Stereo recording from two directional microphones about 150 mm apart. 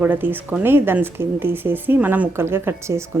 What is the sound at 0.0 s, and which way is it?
Speech, 10° right (ahead or behind).